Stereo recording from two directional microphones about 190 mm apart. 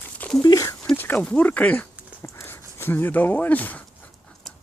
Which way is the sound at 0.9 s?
10° left (ahead or behind).